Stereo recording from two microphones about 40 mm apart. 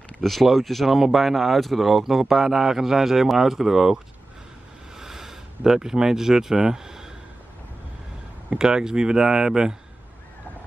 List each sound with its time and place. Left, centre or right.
0.2 s speech: centre
8.5 s speech: centre